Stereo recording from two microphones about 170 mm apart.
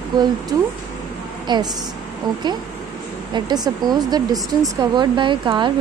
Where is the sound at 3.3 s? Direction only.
25° right (ahead or behind).